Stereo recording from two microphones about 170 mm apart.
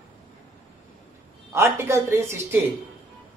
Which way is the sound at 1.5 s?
15° right (ahead or behind).